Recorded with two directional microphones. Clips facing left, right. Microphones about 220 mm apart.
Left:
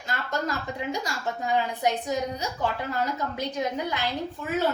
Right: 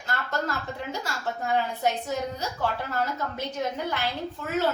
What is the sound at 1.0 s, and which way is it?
A woman's voice, 15° left (ahead or behind).